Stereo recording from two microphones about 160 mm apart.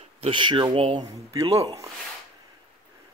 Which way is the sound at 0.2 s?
30° right (ahead or behind).